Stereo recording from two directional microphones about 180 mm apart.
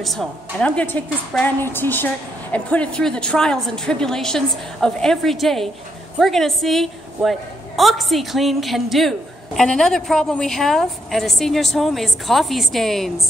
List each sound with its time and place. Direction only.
0.0 s a woman's voice: centre (ahead or behind)